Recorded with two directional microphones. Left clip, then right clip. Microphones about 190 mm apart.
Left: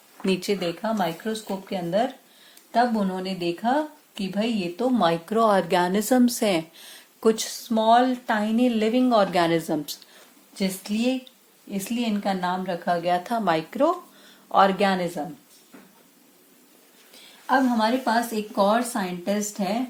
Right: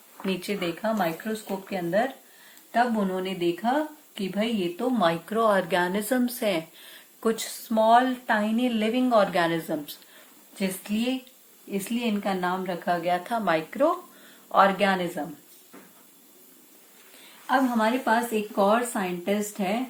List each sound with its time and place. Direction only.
0.3 s speech: 50° left (ahead or behind)
17.4 s speech: 45° left (ahead or behind)